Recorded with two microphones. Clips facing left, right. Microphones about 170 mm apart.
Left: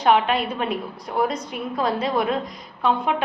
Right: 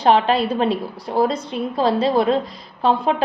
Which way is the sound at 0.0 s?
30° right (ahead or behind).